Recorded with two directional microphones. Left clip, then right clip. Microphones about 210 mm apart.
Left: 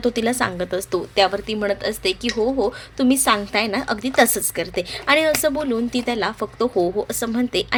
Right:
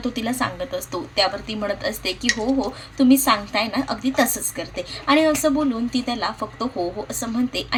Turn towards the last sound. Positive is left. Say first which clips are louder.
# left 3 dB
turn(degrees=55)  # may be behind; listen again after turning